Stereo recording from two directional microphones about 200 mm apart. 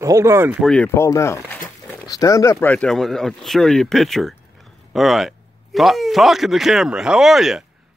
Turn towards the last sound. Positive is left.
turn(degrees=0)  # may be behind; listen again after turning